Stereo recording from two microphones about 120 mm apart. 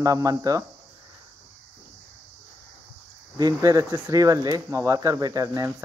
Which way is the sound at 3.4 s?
30° right (ahead or behind).